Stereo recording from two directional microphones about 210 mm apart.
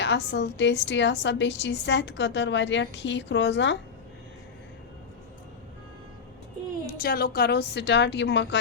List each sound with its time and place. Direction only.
0.0 s a woman's voice: 55° left (ahead or behind)
7.0 s a woman's voice: 45° left (ahead or behind)